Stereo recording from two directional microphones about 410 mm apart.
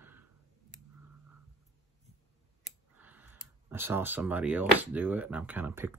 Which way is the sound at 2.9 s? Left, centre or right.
Centre.